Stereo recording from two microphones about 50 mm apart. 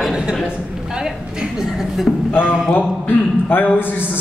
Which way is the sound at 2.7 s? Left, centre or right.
Left.